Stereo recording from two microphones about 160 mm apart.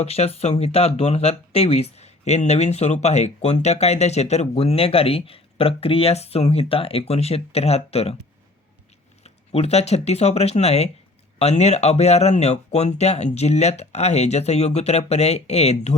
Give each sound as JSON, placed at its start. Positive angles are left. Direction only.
{"t": 0.0, "sound": "speech", "side_deg": 40}
{"t": 9.2, "sound": "speech", "side_deg": 40}